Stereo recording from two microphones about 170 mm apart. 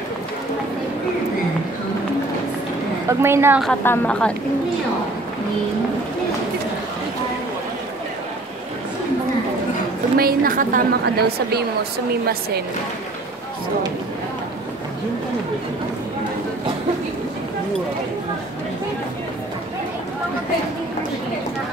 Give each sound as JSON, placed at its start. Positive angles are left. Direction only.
{"t": 3.1, "sound": "a woman's voice", "side_deg": -15}
{"t": 3.8, "sound": "a woman's voice", "side_deg": 10}
{"t": 10.1, "sound": "a woman's voice", "side_deg": -60}